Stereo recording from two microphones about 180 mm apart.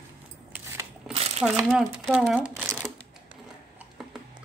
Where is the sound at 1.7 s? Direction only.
5° right (ahead or behind).